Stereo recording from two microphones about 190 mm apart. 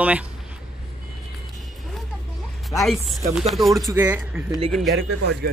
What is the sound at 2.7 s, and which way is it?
Speech, centre (ahead or behind).